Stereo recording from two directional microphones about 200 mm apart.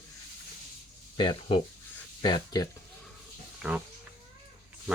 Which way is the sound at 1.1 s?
20° left (ahead or behind).